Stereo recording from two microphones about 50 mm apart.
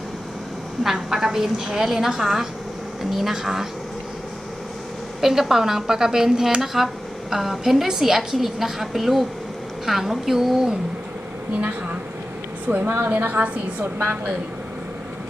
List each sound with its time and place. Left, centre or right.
1.1 s speech: centre
5.2 s speech: centre
12.6 s a woman's voice: right